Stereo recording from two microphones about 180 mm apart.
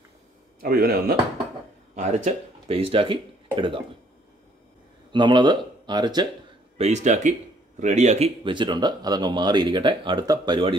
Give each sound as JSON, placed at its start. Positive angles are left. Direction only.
{"t": 0.6, "sound": "speech", "side_deg": -55}
{"t": 2.0, "sound": "speech", "side_deg": -40}
{"t": 5.1, "sound": "speech", "side_deg": -25}
{"t": 6.8, "sound": "speech", "side_deg": -40}